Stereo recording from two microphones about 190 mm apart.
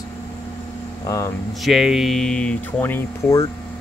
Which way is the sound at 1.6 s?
Centre (ahead or behind).